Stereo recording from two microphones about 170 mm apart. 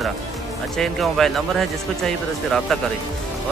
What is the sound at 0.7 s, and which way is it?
Speech, centre (ahead or behind).